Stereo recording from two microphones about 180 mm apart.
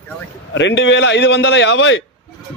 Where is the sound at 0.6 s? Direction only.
90° left.